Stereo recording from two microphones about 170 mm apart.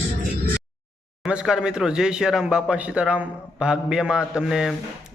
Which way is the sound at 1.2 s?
5° right (ahead or behind).